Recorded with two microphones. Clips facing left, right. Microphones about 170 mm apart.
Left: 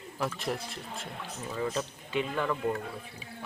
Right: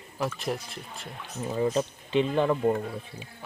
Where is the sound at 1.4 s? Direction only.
25° right (ahead or behind).